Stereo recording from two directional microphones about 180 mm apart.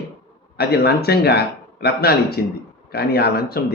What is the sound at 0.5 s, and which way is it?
A man's voice, 60° left (ahead or behind).